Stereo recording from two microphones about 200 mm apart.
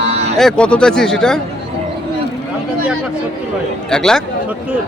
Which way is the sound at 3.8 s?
5° left (ahead or behind).